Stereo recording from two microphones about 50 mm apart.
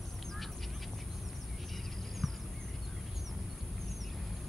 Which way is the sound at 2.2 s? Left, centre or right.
Centre.